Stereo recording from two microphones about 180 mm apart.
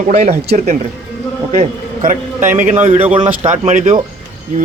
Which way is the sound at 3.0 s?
30° right (ahead or behind).